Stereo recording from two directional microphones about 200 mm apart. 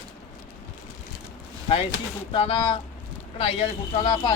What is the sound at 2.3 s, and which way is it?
Speech, 25° left (ahead or behind).